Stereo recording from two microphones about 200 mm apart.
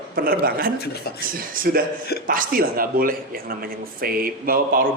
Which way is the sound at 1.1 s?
50° left (ahead or behind).